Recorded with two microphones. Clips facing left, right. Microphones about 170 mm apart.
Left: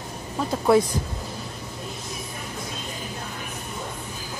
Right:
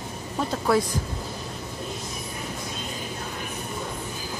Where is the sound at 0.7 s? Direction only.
25° left (ahead or behind).